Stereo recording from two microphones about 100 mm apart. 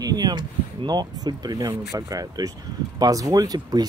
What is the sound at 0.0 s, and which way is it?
Speech, 40° right (ahead or behind).